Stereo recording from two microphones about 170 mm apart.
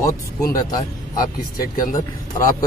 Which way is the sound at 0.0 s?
20° left (ahead or behind).